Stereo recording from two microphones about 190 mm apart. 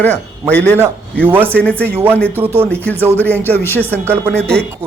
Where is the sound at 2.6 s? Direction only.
10° left (ahead or behind).